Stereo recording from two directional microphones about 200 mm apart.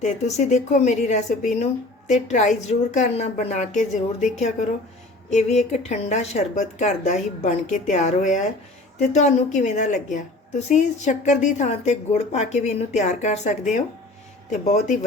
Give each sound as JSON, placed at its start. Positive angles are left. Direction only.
{"t": 0.0, "sound": "a woman's voice", "side_deg": 35}